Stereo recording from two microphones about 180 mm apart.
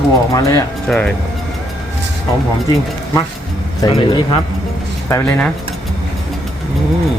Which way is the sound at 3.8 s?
25° left (ahead or behind).